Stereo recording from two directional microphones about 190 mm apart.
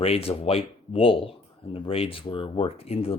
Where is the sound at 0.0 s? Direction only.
30° left (ahead or behind).